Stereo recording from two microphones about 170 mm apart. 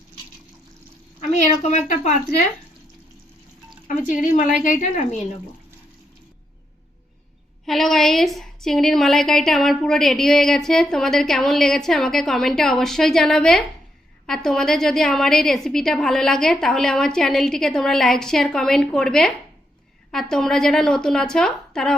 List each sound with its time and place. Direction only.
3.8 s speech: 50° left (ahead or behind)
7.6 s a woman's voice: centre (ahead or behind)